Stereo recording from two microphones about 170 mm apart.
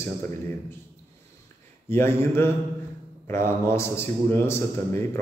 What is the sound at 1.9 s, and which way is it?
A man's voice, 15° left (ahead or behind).